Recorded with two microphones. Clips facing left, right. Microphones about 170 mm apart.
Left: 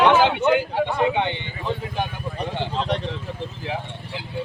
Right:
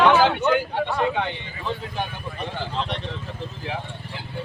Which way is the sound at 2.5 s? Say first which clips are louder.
Left 2 dB; 25° left (ahead or behind).